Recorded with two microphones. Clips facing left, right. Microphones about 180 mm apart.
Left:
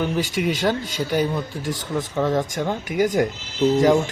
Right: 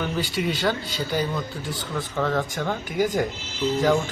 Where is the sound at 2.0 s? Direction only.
15° left (ahead or behind).